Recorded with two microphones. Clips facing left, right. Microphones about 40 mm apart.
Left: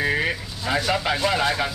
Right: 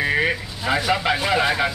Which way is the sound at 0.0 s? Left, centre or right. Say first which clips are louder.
Right 2 dB; centre.